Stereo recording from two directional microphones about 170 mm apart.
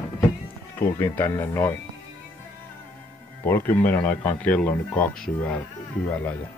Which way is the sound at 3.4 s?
10° left (ahead or behind).